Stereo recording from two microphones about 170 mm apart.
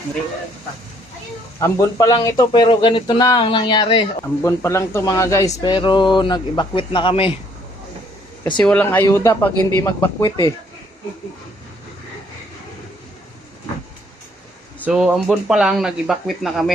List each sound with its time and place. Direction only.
1.5 s speech: 20° left (ahead or behind)
4.4 s speech: 15° left (ahead or behind); by 7.3 s 30° left (ahead or behind)
8.6 s a man's voice: 10° left (ahead or behind)
14.8 s speech: 5° right (ahead or behind)